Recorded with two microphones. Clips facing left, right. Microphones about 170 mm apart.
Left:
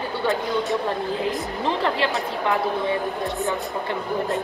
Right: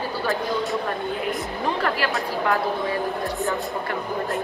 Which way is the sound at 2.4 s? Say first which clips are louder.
Left 1 dB; 20° left (ahead or behind).